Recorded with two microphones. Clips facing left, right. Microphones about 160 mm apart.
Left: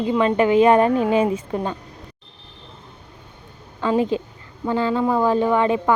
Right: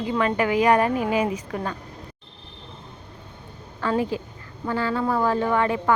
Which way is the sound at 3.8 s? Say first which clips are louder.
Left 4 dB; 20° left (ahead or behind).